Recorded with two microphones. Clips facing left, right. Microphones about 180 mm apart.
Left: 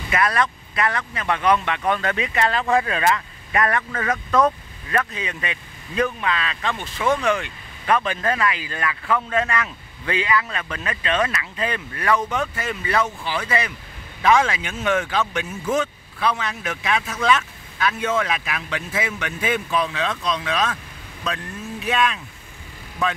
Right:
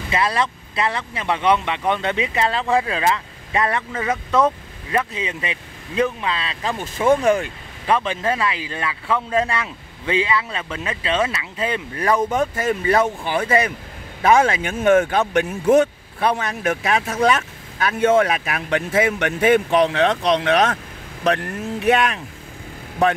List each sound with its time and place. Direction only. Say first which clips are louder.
0.1 s speech: even; 30° right (ahead or behind)
7.8 s speech: right 1 dB; 25° right (ahead or behind)
12.3 s speech: right 6 dB; 45° right (ahead or behind)